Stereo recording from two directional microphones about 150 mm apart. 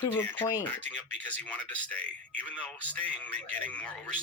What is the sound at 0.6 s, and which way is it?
Speech, 10° left (ahead or behind).